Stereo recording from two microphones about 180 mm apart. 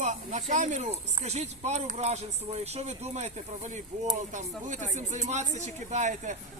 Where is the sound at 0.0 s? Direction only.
40° right (ahead or behind).